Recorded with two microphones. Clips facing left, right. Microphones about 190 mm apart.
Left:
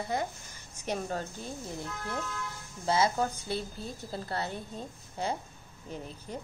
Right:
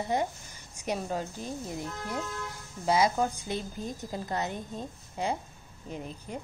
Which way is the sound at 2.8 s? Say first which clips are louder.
Right 2 dB; 15° right (ahead or behind).